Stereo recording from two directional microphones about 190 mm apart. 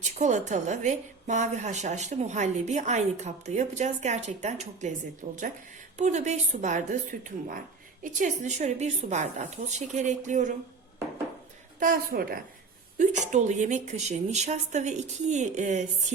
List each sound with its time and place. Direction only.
0.2 s a woman's voice: 40° right (ahead or behind)
11.8 s a woman's voice: 50° right (ahead or behind)
13.0 s a woman's voice: 40° right (ahead or behind)